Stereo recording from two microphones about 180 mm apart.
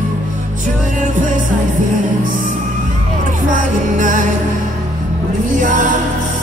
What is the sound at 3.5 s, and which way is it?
Music, 45° right (ahead or behind).